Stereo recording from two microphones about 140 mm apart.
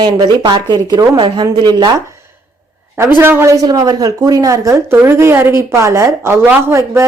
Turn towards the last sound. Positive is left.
turn(degrees=-20)  # may be behind; listen again after turning